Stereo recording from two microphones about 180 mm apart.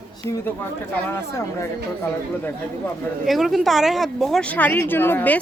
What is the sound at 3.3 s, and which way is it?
Speech, centre (ahead or behind).